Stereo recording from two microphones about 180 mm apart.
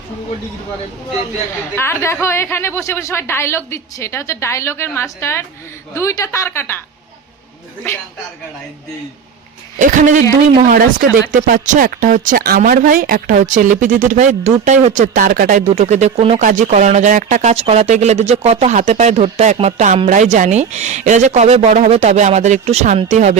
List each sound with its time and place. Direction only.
1.7 s a woman's voice: 15° left (ahead or behind)
9.7 s speech: 45° right (ahead or behind)
16.4 s speech: 45° right (ahead or behind)